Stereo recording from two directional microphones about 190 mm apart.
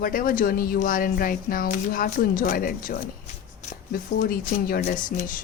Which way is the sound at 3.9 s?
50° left (ahead or behind).